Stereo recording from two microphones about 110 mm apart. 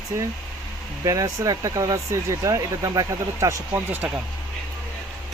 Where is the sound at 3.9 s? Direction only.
15° right (ahead or behind).